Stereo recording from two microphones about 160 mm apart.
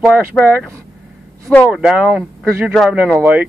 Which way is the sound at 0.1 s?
10° right (ahead or behind).